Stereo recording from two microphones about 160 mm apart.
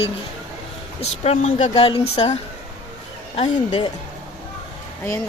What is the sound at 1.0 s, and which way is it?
Speech, 45° left (ahead or behind).